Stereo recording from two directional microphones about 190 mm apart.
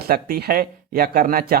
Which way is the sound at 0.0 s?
55° right (ahead or behind).